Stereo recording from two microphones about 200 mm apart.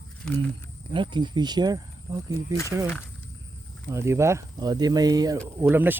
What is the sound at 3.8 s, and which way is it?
Speech, 15° right (ahead or behind).